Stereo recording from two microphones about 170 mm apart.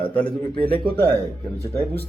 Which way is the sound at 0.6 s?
30° left (ahead or behind).